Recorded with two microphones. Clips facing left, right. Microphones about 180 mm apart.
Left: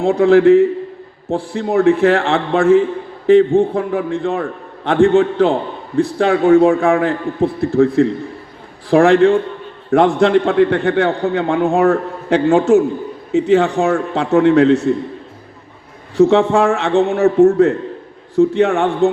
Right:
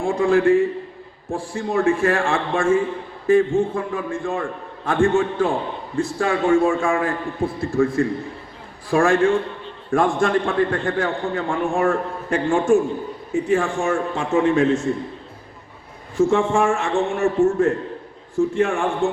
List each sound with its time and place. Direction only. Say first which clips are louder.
0.0 s a man's voice: left 7 dB; 70° left (ahead or behind)
16.1 s a man's voice: left 6 dB; 70° left (ahead or behind)